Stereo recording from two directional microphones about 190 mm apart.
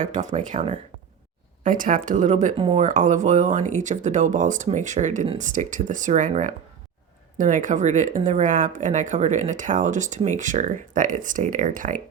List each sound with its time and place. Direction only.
0.0 s speech: 40° right (ahead or behind)
2.6 s speech: 30° right (ahead or behind)
2.8 s speech: 40° right (ahead or behind)